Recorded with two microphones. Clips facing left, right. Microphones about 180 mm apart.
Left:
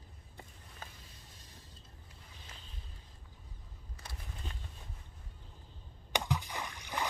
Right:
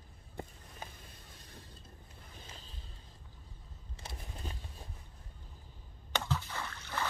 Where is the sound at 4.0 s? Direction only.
25° right (ahead or behind).